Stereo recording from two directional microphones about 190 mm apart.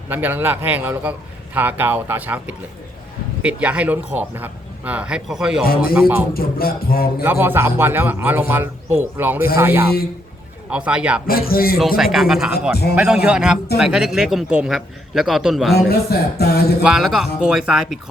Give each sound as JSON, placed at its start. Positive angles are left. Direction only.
{"t": 0.1, "sound": "a man's voice", "side_deg": -10}
{"t": 5.6, "sound": "speech", "side_deg": 50}
{"t": 5.9, "sound": "a man's voice", "side_deg": -5}
{"t": 6.3, "sound": "speech", "side_deg": 50}
{"t": 7.2, "sound": "a man's voice", "side_deg": -10}
{"t": 11.3, "sound": "speech", "side_deg": 50}
{"t": 11.8, "sound": "a man's voice", "side_deg": 0}
{"t": 12.7, "sound": "a man's voice", "side_deg": 55}
{"t": 13.2, "sound": "a man's voice", "side_deg": -5}
{"t": 15.7, "sound": "a man's voice", "side_deg": 55}
{"t": 16.8, "sound": "a man's voice", "side_deg": 0}